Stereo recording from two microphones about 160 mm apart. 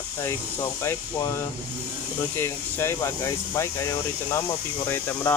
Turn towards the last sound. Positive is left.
turn(degrees=15)  # may be behind; listen again after turning